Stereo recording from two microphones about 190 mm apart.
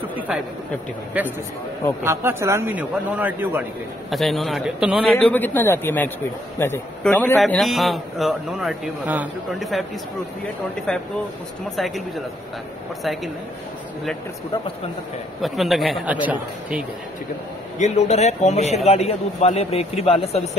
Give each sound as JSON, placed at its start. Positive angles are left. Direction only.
{"t": 1.1, "sound": "a man's voice", "side_deg": -10}
{"t": 4.1, "sound": "a man's voice", "side_deg": 0}
{"t": 5.1, "sound": "a man's voice", "side_deg": 10}
{"t": 10.9, "sound": "a man's voice", "side_deg": 5}
{"t": 13.0, "sound": "a man's voice", "side_deg": 0}
{"t": 15.4, "sound": "a man's voice", "side_deg": 0}
{"t": 17.7, "sound": "a man's voice", "side_deg": 35}